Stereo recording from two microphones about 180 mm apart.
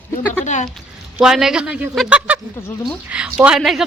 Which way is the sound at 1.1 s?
5° right (ahead or behind).